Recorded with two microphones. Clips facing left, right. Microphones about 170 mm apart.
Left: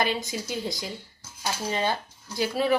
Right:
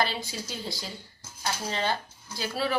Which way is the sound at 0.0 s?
20° left (ahead or behind).